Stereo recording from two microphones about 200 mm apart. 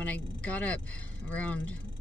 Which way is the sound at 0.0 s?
5° left (ahead or behind).